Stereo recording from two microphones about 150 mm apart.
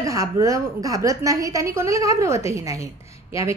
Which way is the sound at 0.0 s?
20° right (ahead or behind).